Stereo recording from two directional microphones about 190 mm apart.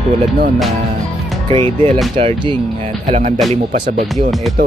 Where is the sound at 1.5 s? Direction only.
30° right (ahead or behind).